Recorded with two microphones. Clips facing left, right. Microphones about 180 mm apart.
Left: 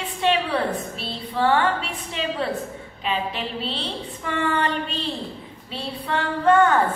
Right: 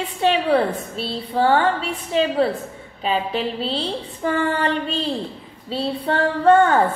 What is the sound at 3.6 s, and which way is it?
Female singing, 35° right (ahead or behind).